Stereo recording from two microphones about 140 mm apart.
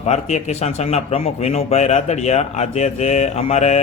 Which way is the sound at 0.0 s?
50° left (ahead or behind).